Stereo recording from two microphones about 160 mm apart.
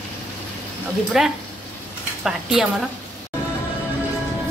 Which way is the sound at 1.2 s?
Centre (ahead or behind).